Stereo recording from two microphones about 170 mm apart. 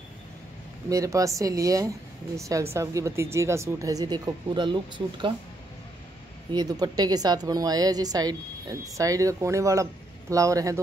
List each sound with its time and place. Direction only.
0.8 s a woman's voice: 20° right (ahead or behind)
6.5 s a woman's voice: 25° right (ahead or behind)